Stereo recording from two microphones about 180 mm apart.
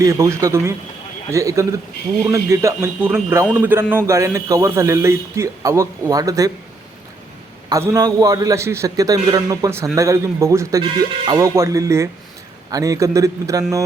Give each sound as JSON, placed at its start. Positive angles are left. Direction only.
{"t": 0.0, "sound": "speech", "side_deg": -15}
{"t": 7.7, "sound": "a man's voice", "side_deg": -20}